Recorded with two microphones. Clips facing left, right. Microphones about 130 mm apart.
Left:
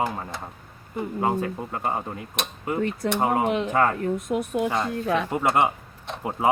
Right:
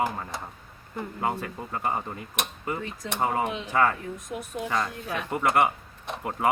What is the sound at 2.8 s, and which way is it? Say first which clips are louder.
Speech: left 7 dB; 65° left (ahead or behind).